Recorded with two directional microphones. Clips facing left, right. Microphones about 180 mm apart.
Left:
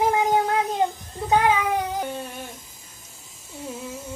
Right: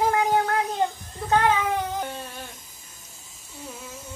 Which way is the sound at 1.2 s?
10° left (ahead or behind).